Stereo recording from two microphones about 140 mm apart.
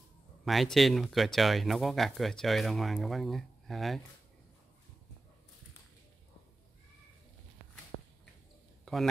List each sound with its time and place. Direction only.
0.5 s speech: centre (ahead or behind)